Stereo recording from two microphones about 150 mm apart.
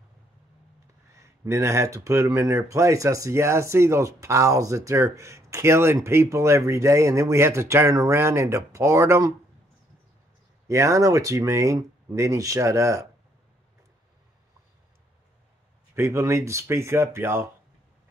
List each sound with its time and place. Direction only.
1.4 s speech: 20° right (ahead or behind)
10.7 s speech: 20° right (ahead or behind)
15.9 s speech: 15° right (ahead or behind)